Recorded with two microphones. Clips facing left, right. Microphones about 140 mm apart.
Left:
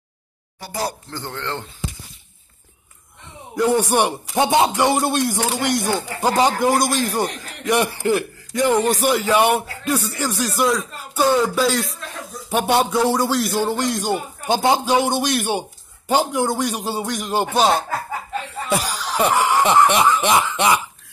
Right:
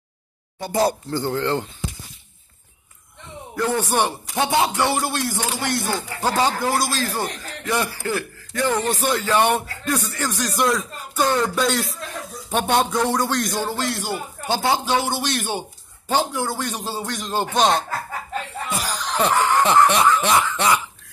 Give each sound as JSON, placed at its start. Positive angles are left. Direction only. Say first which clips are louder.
{"t": 0.6, "sound": "speech", "louder": "right 6 dB", "side_deg": -25}
{"t": 1.1, "sound": "speech", "louder": "right 7 dB", "side_deg": -5}
{"t": 3.5, "sound": "speech", "louder": "left 4 dB", "side_deg": 15}
{"t": 18.9, "sound": "snicker", "louder": "right 1 dB", "side_deg": 5}